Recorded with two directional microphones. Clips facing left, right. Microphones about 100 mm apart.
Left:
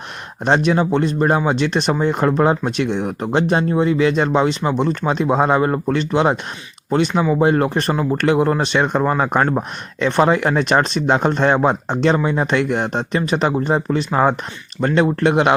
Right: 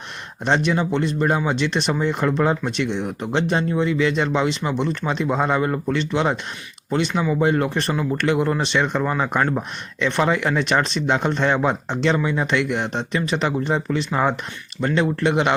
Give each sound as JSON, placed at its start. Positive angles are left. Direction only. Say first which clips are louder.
{"t": 0.4, "sound": "speech", "louder": "left 4 dB", "side_deg": 45}
{"t": 7.4, "sound": "speech", "louder": "left 4 dB", "side_deg": 45}